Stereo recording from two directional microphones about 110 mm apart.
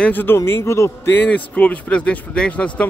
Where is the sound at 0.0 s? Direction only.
20° left (ahead or behind).